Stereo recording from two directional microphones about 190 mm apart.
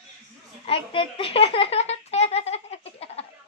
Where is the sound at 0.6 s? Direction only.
30° left (ahead or behind).